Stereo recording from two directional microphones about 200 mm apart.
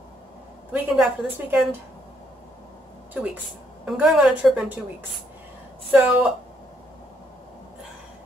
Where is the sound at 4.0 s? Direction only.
Centre (ahead or behind).